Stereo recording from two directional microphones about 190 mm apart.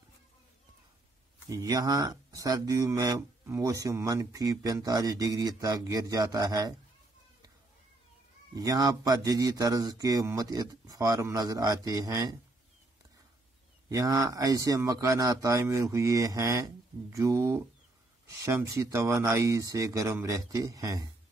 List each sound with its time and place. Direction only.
1.5 s speech: 20° right (ahead or behind)
8.5 s speech: 20° right (ahead or behind)
13.8 s speech: 15° right (ahead or behind)